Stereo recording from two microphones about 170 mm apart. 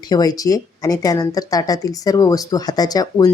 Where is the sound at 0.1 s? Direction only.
20° left (ahead or behind).